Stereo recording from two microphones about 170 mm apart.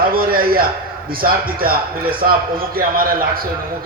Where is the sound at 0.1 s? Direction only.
60° right (ahead or behind).